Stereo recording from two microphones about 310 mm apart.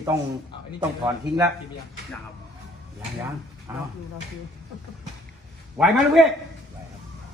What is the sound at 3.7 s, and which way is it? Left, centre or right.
Speech, centre.